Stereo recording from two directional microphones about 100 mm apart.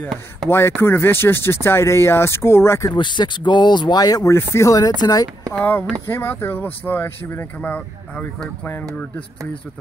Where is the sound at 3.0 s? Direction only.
50° left (ahead or behind).